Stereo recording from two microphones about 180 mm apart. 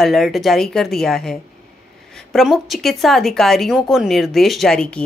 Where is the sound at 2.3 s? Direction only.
Centre (ahead or behind).